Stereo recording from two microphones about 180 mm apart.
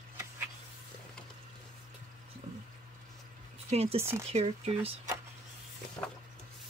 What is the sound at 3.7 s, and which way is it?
Speech, 35° right (ahead or behind).